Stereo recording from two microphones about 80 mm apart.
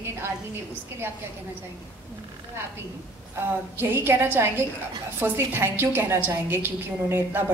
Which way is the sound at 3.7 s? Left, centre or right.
Right.